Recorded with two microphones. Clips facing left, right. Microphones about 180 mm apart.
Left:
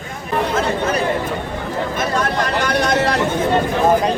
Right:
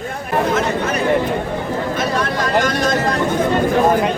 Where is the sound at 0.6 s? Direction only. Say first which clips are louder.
Even; 30° left (ahead or behind).